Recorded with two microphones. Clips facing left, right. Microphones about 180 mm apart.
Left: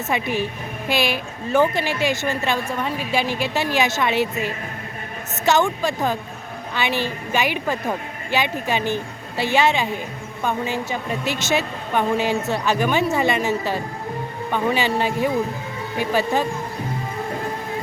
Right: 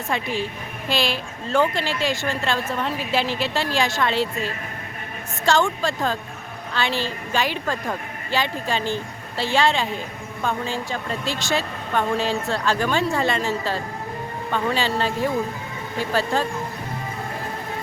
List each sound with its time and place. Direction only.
0.9 s speech: 55° left (ahead or behind)
1.5 s a woman's voice: 15° left (ahead or behind)